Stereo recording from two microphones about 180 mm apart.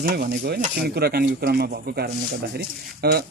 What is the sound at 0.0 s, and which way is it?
Speech, 55° right (ahead or behind).